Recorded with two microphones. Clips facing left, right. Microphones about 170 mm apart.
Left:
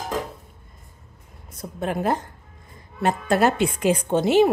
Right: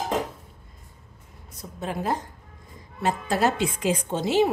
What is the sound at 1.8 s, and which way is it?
Speech, 60° left (ahead or behind).